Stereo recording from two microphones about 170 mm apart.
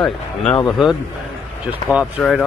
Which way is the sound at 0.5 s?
25° left (ahead or behind).